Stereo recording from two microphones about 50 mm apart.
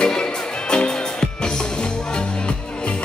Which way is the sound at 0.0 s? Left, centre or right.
Centre.